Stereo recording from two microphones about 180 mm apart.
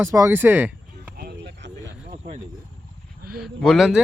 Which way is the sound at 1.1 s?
60° right (ahead or behind).